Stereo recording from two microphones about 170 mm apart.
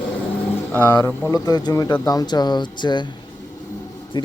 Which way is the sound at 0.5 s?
10° left (ahead or behind).